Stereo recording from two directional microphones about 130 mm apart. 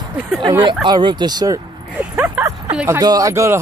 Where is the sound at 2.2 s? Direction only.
15° right (ahead or behind).